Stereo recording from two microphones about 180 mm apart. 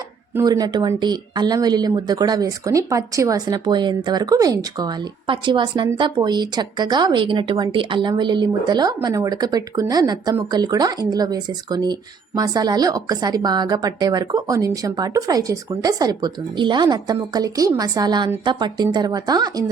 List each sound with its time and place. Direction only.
0.3 s a woman's voice: 20° right (ahead or behind)